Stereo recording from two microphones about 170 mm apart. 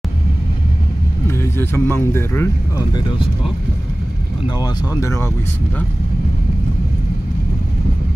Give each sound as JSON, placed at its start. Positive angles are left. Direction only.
{"t": 1.2, "sound": "speech", "side_deg": 15}
{"t": 4.6, "sound": "speech", "side_deg": 20}